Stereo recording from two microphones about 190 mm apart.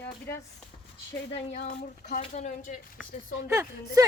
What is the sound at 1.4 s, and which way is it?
Speech, 35° left (ahead or behind).